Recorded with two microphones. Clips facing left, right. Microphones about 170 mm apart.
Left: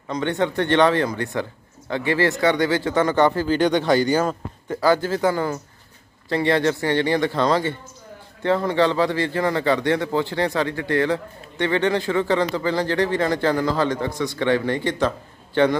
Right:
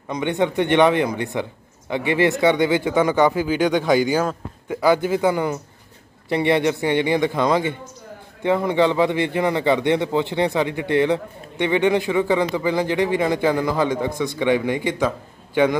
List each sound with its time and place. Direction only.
0.1 s speech: 15° right (ahead or behind)
4.8 s speech: 15° right (ahead or behind)